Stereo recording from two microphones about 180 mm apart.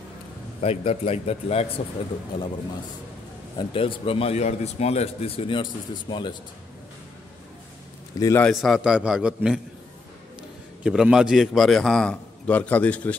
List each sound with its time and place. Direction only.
0.6 s a man's voice: 35° left (ahead or behind)
3.5 s a man's voice: 30° left (ahead or behind)
8.2 s a man's voice: 15° left (ahead or behind)
8.5 s a man's voice: centre (ahead or behind)
10.8 s a man's voice: 5° right (ahead or behind)